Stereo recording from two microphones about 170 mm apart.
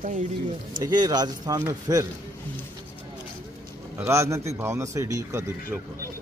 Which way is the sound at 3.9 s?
15° right (ahead or behind).